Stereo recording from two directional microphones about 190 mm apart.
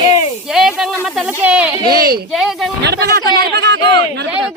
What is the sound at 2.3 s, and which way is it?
Speech, centre (ahead or behind).